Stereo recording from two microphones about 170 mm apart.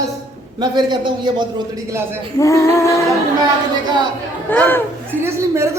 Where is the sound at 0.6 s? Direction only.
25° right (ahead or behind).